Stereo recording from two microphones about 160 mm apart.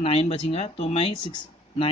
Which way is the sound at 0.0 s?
35° left (ahead or behind).